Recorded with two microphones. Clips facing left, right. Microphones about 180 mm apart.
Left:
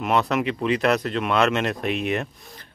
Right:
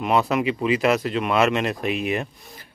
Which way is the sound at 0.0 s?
5° right (ahead or behind).